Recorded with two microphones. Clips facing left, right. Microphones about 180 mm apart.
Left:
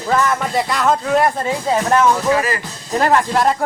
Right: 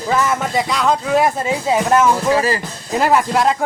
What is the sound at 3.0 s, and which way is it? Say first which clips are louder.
Speech: even; 5° right (ahead or behind).